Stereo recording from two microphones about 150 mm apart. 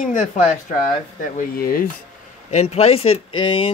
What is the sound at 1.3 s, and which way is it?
Speech, 70° left (ahead or behind).